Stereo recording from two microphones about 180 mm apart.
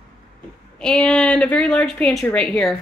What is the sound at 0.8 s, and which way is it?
A woman's voice, 5° left (ahead or behind).